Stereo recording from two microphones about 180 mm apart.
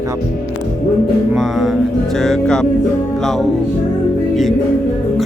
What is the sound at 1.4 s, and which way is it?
Music, centre (ahead or behind).